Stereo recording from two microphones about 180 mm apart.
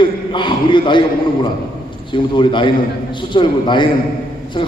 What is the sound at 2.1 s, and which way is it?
A man's voice, 25° left (ahead or behind).